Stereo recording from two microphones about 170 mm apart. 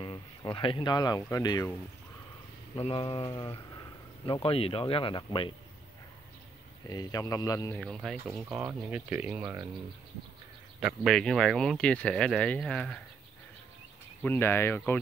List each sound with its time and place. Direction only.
0.0 s speech: 30° left (ahead or behind)
2.7 s speech: 35° left (ahead or behind)
6.9 s speech: 20° left (ahead or behind)
7.7 s speech: 5° left (ahead or behind)
10.8 s speech: centre (ahead or behind)
14.2 s speech: 15° left (ahead or behind)